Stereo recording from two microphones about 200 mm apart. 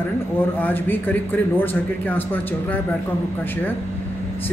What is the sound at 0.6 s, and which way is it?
Speech, 10° left (ahead or behind).